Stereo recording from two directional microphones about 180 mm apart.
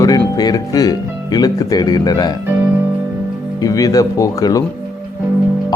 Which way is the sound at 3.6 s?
20° left (ahead or behind).